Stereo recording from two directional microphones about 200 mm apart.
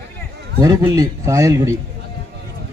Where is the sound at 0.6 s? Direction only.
20° right (ahead or behind).